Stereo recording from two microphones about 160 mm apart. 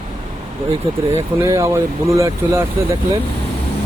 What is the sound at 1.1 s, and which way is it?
Speech, 20° right (ahead or behind).